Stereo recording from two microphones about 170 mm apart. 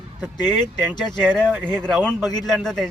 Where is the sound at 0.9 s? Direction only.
25° left (ahead or behind).